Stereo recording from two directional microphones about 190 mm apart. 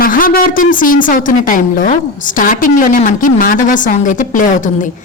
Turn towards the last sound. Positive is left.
turn(degrees=40)  # may be behind; listen again after turning